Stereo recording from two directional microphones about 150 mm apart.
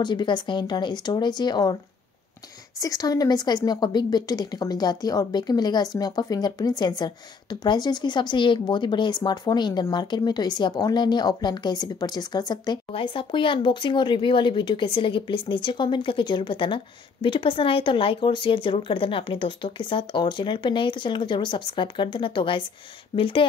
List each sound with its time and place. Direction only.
0.0 s speech: 30° left (ahead or behind)
2.8 s a woman's voice: 25° left (ahead or behind)